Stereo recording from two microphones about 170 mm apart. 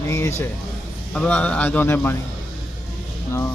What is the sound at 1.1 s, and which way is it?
A man's voice, 5° left (ahead or behind).